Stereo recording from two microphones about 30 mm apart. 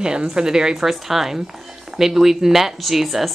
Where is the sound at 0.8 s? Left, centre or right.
Centre.